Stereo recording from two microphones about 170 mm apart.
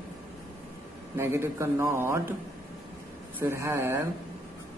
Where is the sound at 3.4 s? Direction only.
15° right (ahead or behind).